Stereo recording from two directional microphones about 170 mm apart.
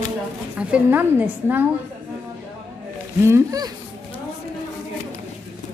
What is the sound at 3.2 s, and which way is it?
Speech, 20° right (ahead or behind).